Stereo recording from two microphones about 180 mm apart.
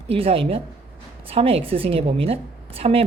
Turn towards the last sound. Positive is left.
turn(degrees=-30)  # may be behind; listen again after turning